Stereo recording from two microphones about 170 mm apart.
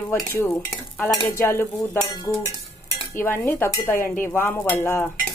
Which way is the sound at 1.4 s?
15° left (ahead or behind).